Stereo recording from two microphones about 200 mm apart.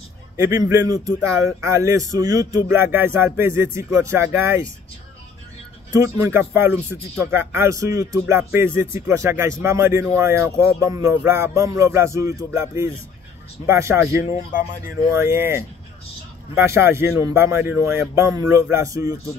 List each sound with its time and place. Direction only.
0.4 s speech: 15° right (ahead or behind)
5.9 s speech: 15° right (ahead or behind)